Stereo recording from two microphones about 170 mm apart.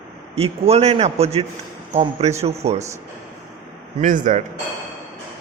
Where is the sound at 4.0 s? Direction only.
50° right (ahead or behind).